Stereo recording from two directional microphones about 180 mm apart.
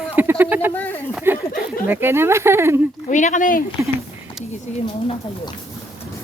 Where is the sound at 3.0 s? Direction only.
45° left (ahead or behind).